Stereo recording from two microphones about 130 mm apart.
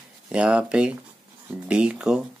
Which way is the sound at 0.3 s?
10° right (ahead or behind).